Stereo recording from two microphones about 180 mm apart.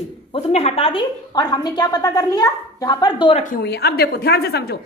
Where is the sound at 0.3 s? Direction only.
35° left (ahead or behind).